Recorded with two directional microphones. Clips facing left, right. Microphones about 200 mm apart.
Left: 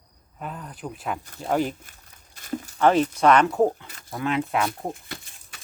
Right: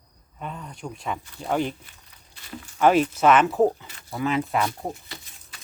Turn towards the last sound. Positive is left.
turn(degrees=55)  # may be behind; listen again after turning